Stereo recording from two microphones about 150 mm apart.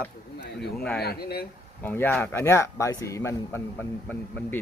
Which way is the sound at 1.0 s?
90° left.